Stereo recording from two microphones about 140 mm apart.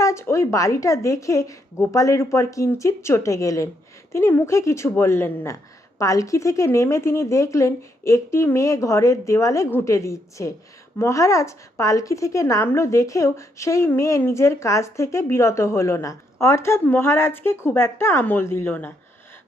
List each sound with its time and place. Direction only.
0.0 s a woman's voice: 20° left (ahead or behind)